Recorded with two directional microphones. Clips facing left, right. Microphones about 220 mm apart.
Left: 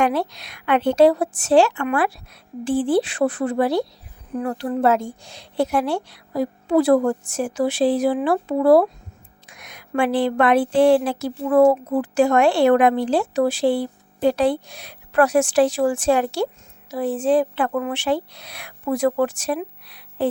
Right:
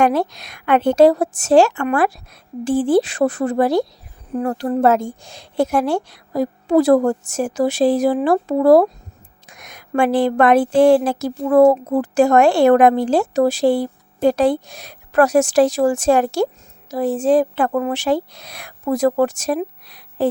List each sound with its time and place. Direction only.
0.0 s speech: 45° right (ahead or behind)